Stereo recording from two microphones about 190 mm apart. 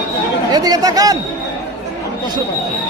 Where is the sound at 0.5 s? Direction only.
20° right (ahead or behind).